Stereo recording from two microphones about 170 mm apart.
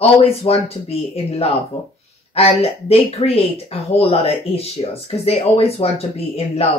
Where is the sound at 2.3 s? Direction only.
35° left (ahead or behind).